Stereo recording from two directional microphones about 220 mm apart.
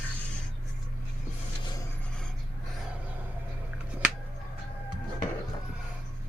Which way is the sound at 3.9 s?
5° right (ahead or behind).